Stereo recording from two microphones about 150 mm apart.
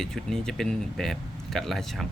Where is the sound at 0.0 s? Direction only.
5° left (ahead or behind).